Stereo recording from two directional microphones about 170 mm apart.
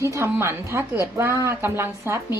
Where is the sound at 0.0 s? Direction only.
15° right (ahead or behind).